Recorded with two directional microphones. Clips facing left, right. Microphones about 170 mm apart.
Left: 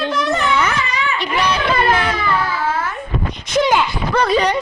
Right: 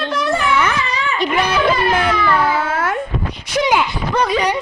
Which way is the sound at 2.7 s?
90° right.